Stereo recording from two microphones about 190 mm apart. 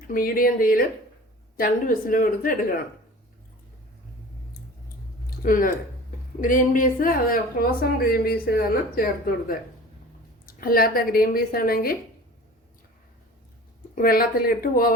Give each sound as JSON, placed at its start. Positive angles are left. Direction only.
{"t": 0.1, "sound": "speech", "side_deg": 50}
{"t": 5.4, "sound": "speech", "side_deg": 45}
{"t": 13.9, "sound": "speech", "side_deg": 50}